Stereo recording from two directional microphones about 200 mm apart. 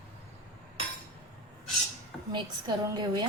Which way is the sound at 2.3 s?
20° right (ahead or behind).